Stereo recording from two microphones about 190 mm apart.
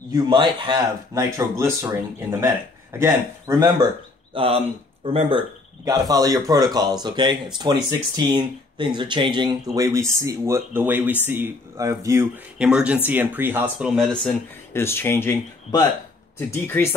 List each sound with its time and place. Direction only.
0.1 s speech: 25° right (ahead or behind)
4.3 s speech: 30° right (ahead or behind); by 16.8 s 10° left (ahead or behind)